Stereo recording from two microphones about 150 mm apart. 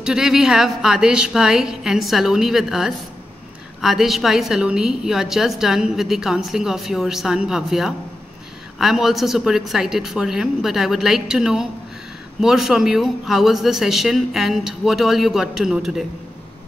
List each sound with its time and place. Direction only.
0.0 s a woman's voice: 5° right (ahead or behind)